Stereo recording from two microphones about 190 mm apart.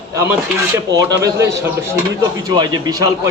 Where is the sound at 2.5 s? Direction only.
20° right (ahead or behind).